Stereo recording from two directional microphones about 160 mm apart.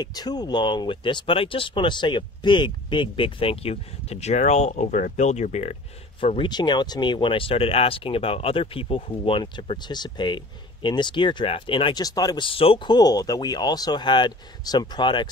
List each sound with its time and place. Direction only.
0.0 s speech: 25° left (ahead or behind); by 5.8 s 45° left (ahead or behind)
6.2 s speech: 30° left (ahead or behind)